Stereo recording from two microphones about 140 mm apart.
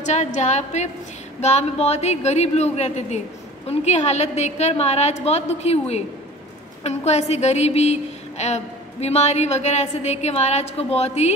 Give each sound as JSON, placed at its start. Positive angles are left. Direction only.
{"t": 0.0, "sound": "a woman's voice", "side_deg": 55}